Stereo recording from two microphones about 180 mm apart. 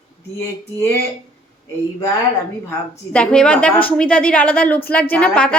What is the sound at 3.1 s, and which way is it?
A woman's voice, 5° left (ahead or behind).